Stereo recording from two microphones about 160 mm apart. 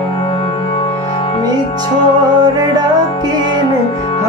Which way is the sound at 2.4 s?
25° right (ahead or behind).